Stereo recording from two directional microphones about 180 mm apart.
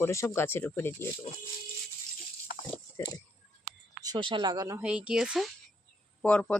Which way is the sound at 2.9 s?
20° left (ahead or behind).